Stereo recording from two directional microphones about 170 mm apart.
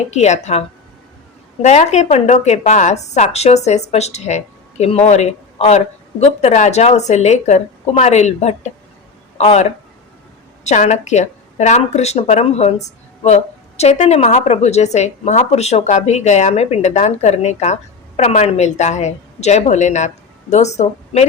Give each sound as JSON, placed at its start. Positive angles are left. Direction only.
{"t": 0.1, "sound": "speech", "side_deg": 40}
{"t": 1.6, "sound": "speech", "side_deg": 40}